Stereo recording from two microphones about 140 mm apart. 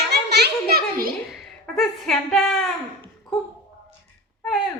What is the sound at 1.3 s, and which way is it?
Speech, centre (ahead or behind).